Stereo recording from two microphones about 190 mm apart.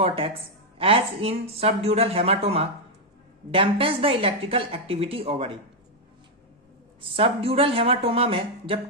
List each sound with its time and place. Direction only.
0.0 s a woman's voice: 30° right (ahead or behind)
7.2 s a woman's voice: 30° right (ahead or behind)